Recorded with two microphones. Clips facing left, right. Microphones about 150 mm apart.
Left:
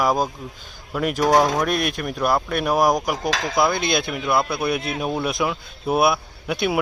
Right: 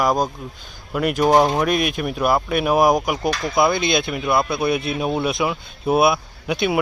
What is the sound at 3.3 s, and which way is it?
Speech, 90° left.